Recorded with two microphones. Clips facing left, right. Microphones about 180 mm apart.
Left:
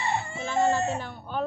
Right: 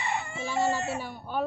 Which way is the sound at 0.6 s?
10° right (ahead or behind).